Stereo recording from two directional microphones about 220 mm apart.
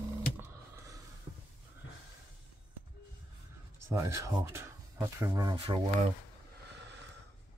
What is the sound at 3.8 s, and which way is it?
Speech, 15° right (ahead or behind).